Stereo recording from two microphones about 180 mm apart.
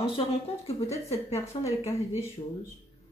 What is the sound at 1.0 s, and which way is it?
Speech, 35° left (ahead or behind).